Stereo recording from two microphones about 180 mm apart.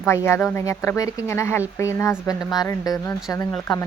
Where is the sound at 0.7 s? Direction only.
15° left (ahead or behind).